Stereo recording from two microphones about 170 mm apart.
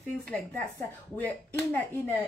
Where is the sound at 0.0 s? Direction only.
10° left (ahead or behind).